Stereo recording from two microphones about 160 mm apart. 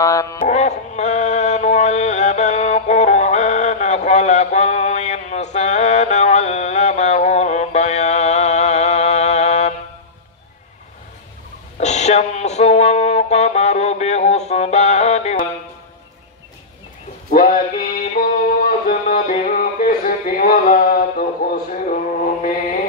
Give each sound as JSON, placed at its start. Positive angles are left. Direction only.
{"t": 0.0, "sound": "music", "side_deg": 20}
{"t": 0.5, "sound": "music", "side_deg": 45}
{"t": 11.8, "sound": "music", "side_deg": 45}
{"t": 17.3, "sound": "male singing", "side_deg": 60}